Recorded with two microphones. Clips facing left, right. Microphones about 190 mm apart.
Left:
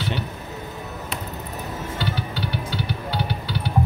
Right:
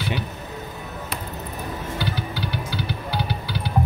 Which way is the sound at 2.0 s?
15° right (ahead or behind).